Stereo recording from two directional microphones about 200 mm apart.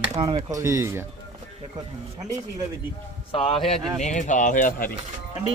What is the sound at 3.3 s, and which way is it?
Speech, 25° left (ahead or behind).